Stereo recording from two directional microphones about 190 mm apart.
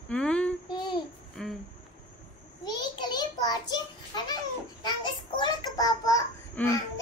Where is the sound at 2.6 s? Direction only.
20° left (ahead or behind).